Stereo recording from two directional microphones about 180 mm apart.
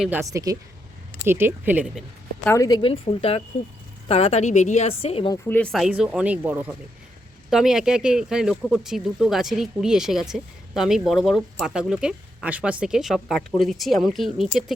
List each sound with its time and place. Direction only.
0.0 s speech: 10° right (ahead or behind)
2.4 s a woman's voice: 15° left (ahead or behind); by 5.3 s 30° left (ahead or behind)
5.5 s speech: 5° left (ahead or behind)